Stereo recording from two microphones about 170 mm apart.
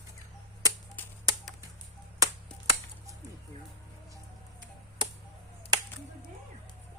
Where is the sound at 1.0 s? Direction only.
10° left (ahead or behind).